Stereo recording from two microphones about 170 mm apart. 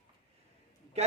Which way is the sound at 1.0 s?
40° right (ahead or behind).